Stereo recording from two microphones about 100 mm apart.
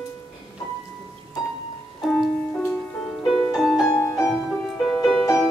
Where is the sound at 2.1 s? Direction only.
10° left (ahead or behind).